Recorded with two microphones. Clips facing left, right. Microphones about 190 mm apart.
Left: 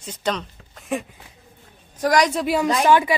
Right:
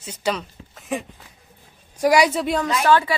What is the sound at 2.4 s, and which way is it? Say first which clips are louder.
Speech: left 2 dB; 5° left (ahead or behind).